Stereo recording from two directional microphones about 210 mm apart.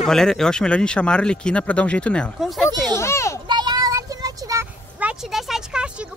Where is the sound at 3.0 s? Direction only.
15° left (ahead or behind).